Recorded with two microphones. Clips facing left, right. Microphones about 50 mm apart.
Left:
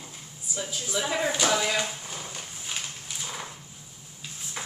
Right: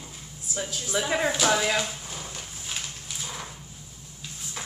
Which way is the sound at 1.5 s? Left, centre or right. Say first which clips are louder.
Right 1 dB; centre.